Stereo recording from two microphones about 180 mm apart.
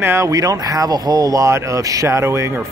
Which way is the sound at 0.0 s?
15° right (ahead or behind).